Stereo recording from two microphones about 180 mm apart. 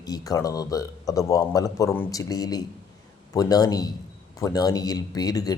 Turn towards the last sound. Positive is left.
turn(degrees=20)  # may be behind; listen again after turning